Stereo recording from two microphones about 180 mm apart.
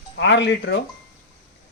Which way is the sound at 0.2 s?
80° left.